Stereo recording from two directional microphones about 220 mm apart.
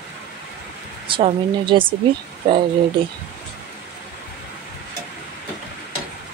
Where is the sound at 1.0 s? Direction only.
25° right (ahead or behind).